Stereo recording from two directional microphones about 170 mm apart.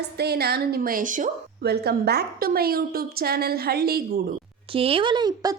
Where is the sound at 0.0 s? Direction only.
70° right (ahead or behind); by 1.3 s 50° right (ahead or behind).